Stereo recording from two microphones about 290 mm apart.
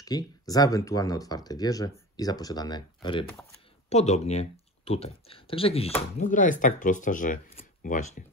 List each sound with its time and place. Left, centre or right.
0.0 s speech: centre